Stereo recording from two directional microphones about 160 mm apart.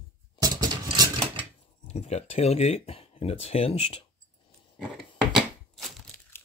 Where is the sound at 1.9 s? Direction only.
45° left (ahead or behind).